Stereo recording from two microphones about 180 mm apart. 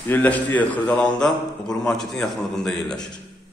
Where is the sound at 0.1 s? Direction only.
10° left (ahead or behind).